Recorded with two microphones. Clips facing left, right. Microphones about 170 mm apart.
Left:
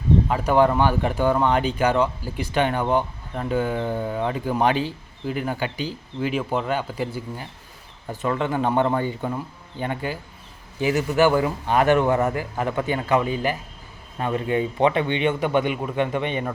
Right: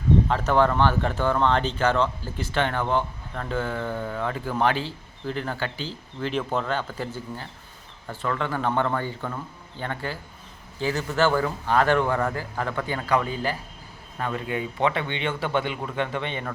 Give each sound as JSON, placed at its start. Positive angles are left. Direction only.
{"t": 0.3, "sound": "speech", "side_deg": 10}